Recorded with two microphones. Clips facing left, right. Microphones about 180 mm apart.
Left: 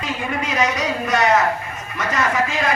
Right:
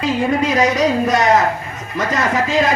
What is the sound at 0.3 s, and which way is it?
Speech, 35° right (ahead or behind).